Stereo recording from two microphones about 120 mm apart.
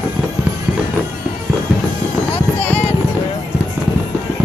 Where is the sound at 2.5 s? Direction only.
15° left (ahead or behind).